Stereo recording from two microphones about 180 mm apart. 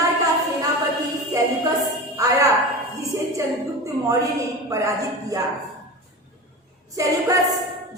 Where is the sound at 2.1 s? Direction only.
20° right (ahead or behind).